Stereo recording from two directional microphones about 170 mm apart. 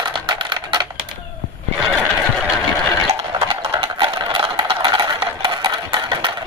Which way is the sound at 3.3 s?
35° right (ahead or behind).